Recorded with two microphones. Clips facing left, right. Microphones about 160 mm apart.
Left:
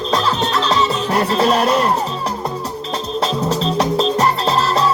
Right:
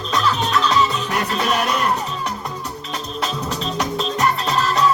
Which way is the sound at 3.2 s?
30° left (ahead or behind).